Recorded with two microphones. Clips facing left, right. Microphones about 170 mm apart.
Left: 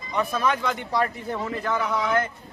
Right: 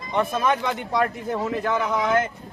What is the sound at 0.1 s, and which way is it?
A man's voice, 20° right (ahead or behind).